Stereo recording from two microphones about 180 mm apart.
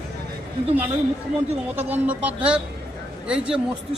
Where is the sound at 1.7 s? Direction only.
10° right (ahead or behind).